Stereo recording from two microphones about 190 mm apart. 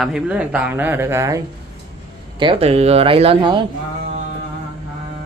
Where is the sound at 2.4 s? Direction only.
30° right (ahead or behind).